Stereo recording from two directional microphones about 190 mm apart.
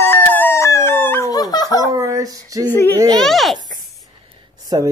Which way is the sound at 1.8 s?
15° right (ahead or behind).